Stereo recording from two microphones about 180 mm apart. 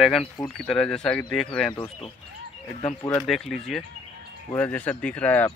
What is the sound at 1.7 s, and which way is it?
Speech, 25° left (ahead or behind).